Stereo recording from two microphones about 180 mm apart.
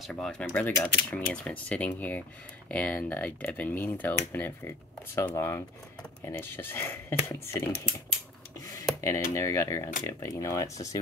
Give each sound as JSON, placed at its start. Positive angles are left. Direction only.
{"t": 0.0, "sound": "speech", "side_deg": 5}
{"t": 8.5, "sound": "a sound", "side_deg": 20}
{"t": 9.3, "sound": "speech", "side_deg": 15}